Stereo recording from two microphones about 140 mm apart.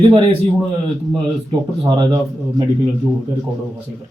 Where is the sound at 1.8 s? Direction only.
35° right (ahead or behind).